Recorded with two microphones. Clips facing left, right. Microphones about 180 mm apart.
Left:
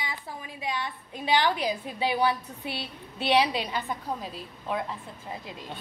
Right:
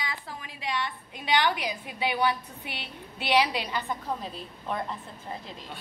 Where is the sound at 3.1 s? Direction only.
25° left (ahead or behind).